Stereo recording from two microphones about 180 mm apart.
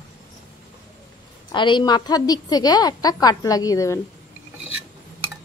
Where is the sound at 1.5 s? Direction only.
25° left (ahead or behind).